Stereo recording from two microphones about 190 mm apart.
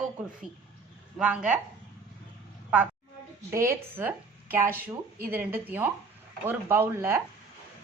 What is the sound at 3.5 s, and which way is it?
A woman's voice, 15° right (ahead or behind).